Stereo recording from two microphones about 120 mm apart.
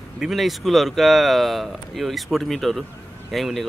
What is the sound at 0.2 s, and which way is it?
Speech, centre (ahead or behind).